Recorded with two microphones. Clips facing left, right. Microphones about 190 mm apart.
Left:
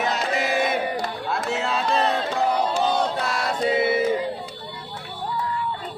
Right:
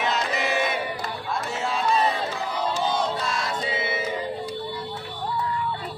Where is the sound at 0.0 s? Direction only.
50° left (ahead or behind).